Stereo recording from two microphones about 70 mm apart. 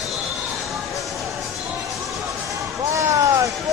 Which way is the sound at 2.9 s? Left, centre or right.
Right.